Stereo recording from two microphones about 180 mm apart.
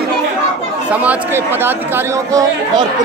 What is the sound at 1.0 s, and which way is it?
Speech, 10° right (ahead or behind).